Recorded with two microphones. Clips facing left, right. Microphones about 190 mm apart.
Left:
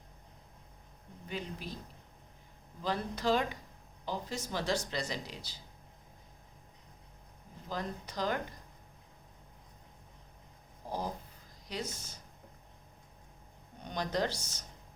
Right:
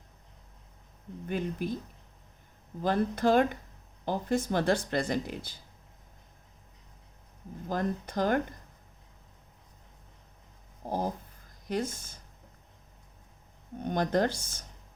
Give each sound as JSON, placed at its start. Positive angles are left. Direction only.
{"t": 1.3, "sound": "speech", "side_deg": -50}
{"t": 2.8, "sound": "speech", "side_deg": -50}
{"t": 7.7, "sound": "speech", "side_deg": -50}
{"t": 10.8, "sound": "a sound", "side_deg": -50}
{"t": 11.7, "sound": "speech", "side_deg": -50}
{"t": 13.7, "sound": "speech", "side_deg": -50}